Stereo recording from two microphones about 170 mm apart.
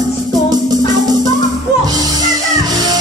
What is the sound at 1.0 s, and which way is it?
Music, 20° right (ahead or behind).